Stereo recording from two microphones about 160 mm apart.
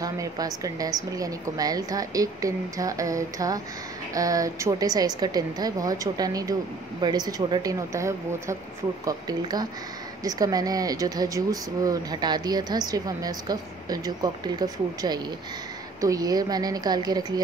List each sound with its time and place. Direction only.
0.0 s speech: 20° right (ahead or behind)